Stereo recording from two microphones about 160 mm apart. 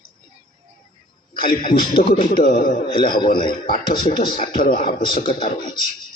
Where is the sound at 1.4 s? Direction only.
65° left (ahead or behind).